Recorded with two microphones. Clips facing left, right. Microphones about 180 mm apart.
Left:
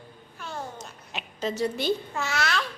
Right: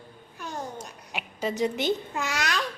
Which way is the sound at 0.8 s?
10° right (ahead or behind).